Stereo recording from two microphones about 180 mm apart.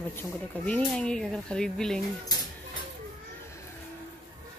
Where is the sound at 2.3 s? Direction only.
20° left (ahead or behind).